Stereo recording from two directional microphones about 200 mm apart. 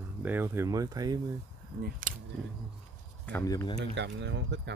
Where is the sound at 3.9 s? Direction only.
60° right (ahead or behind).